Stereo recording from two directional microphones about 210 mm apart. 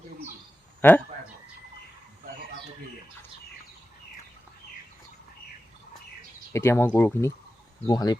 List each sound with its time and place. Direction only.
0.8 s speech: 10° left (ahead or behind)
6.5 s speech: 10° left (ahead or behind)